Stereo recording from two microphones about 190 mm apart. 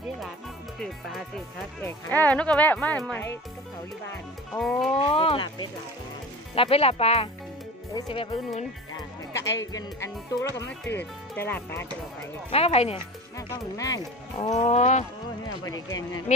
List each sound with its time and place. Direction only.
1.9 s speech: 10° left (ahead or behind)
4.6 s music: centre (ahead or behind)
4.9 s speech: 30° left (ahead or behind)
8.9 s music: 15° left (ahead or behind)
9.7 s speech: 15° left (ahead or behind)
12.4 s speech: 30° left (ahead or behind)
13.7 s speech: 20° left (ahead or behind)
14.4 s speech: 35° left (ahead or behind)
16.3 s speech: 40° left (ahead or behind)